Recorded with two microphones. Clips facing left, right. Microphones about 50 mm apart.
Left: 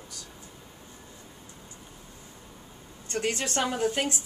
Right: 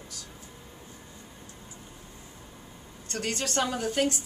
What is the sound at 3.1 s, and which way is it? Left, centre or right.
A woman's voice, left.